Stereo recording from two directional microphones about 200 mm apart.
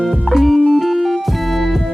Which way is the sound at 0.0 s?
Centre (ahead or behind).